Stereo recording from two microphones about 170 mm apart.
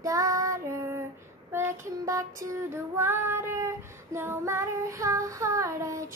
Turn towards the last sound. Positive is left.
turn(degrees=-20)  # may be behind; listen again after turning